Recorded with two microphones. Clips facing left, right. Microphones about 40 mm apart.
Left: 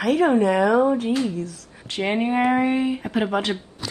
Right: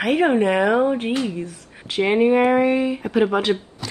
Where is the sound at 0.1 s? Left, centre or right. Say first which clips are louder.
Even; right.